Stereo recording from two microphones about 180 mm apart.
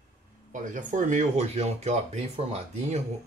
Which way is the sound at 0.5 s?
45° right (ahead or behind).